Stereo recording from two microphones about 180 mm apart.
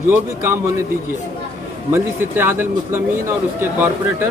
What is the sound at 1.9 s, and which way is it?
A man's voice, 15° right (ahead or behind).